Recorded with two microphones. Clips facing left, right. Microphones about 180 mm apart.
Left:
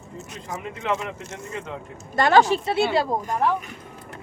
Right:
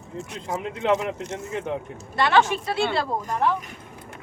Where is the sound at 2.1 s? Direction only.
40° left (ahead or behind).